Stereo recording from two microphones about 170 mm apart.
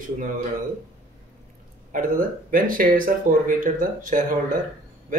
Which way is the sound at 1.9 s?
55° right (ahead or behind).